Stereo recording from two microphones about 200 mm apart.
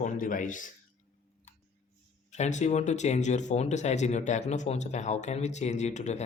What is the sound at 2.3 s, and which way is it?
Speech, 35° left (ahead or behind).